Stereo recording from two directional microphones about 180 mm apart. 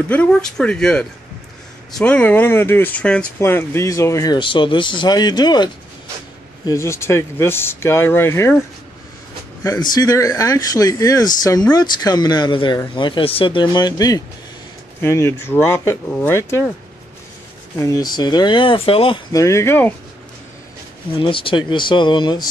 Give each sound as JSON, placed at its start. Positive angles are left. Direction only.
{"t": 0.1, "sound": "speech", "side_deg": 5}
{"t": 17.7, "sound": "speech", "side_deg": 20}
{"t": 19.3, "sound": "speech", "side_deg": 15}
{"t": 21.2, "sound": "speech", "side_deg": 30}